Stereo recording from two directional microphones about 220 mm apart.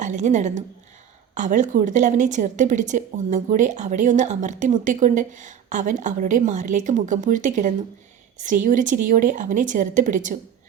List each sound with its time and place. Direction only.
0.0 s a woman's voice: 35° right (ahead or behind)